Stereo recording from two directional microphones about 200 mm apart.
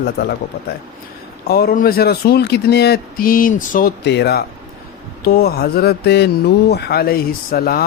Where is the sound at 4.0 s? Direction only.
60° left (ahead or behind).